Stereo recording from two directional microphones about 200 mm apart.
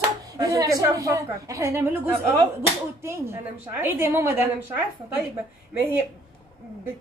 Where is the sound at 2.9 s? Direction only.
10° right (ahead or behind).